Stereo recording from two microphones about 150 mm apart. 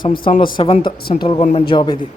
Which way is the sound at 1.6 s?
30° left (ahead or behind).